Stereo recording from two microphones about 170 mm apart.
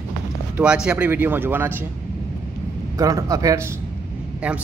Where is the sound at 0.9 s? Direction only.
10° right (ahead or behind).